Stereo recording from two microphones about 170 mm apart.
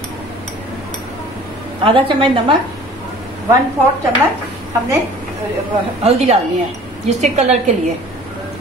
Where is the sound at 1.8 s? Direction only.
30° right (ahead or behind).